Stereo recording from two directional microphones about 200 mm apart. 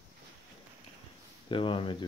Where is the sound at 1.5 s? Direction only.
25° left (ahead or behind).